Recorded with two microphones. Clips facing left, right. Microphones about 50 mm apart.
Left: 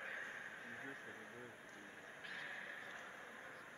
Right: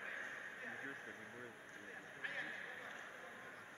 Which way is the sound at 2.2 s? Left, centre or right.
Right.